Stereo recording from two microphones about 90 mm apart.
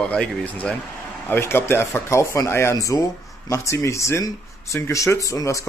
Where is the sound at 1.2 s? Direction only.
25° left (ahead or behind).